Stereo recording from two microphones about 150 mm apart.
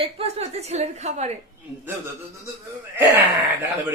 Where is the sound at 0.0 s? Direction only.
45° right (ahead or behind).